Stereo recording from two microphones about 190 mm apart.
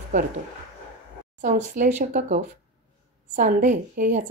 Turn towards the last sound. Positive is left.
turn(degrees=-45)  # may be behind; listen again after turning